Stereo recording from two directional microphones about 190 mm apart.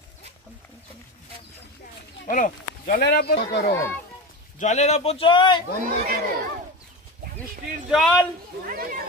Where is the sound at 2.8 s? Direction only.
55° left (ahead or behind).